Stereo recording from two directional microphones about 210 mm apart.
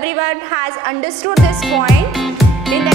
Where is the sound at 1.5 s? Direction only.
Centre (ahead or behind).